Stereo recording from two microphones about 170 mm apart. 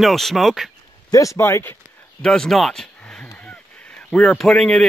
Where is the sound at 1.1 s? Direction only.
20° left (ahead or behind).